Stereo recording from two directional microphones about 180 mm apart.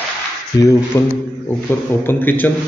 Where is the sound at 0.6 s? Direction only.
15° left (ahead or behind).